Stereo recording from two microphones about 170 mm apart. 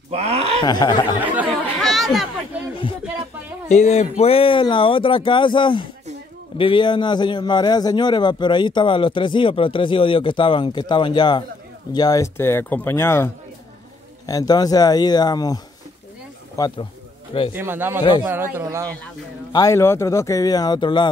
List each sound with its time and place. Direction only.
0.1 s a sound: 35° right (ahead or behind)
0.7 s a man's voice: 25° left (ahead or behind)
1.2 s chatter: 10° right (ahead or behind)
1.8 s chatter: centre (ahead or behind)
3.6 s a man's voice: 40° left (ahead or behind); by 16.8 s 20° left (ahead or behind)
17.6 s a man's voice: 10° right (ahead or behind)
19.5 s a man's voice: 20° left (ahead or behind)